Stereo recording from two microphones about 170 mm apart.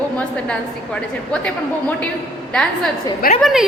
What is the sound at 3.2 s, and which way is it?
Speech, 60° left (ahead or behind).